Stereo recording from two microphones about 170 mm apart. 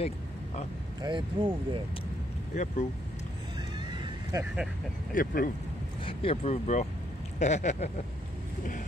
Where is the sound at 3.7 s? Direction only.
25° right (ahead or behind).